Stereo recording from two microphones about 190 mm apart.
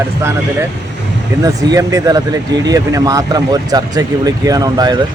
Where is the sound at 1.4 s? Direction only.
20° right (ahead or behind).